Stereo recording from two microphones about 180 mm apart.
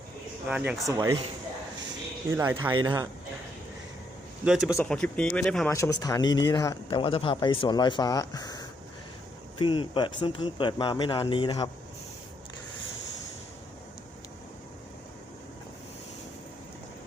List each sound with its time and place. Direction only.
0.4 s speech: 5° right (ahead or behind)
0.9 s speech: 20° right (ahead or behind)
2.3 s speech: 15° right (ahead or behind)
4.4 s speech: centre (ahead or behind)
4.7 s speech: 10° left (ahead or behind)
5.7 s speech: 20° left (ahead or behind)